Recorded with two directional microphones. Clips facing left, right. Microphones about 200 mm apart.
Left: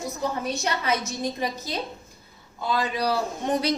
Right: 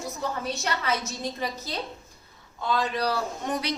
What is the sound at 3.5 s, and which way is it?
Speech, 35° left (ahead or behind).